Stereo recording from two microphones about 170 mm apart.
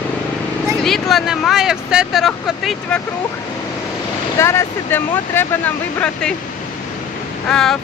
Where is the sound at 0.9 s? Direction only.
Centre (ahead or behind).